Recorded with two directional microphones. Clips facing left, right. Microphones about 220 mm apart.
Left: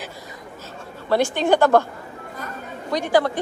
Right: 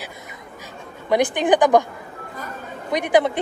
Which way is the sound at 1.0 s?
15° right (ahead or behind).